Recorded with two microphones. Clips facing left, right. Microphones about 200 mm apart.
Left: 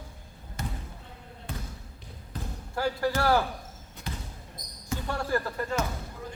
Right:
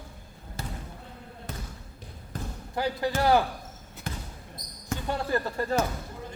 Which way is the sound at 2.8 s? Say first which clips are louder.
Even; 20° right (ahead or behind).